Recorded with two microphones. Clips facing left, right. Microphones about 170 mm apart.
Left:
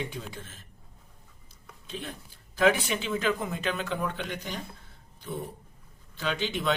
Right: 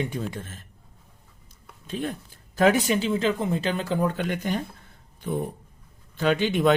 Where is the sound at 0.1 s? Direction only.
50° right (ahead or behind).